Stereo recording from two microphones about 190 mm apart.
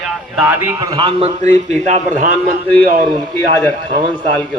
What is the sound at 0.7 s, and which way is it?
A man's voice, 25° right (ahead or behind).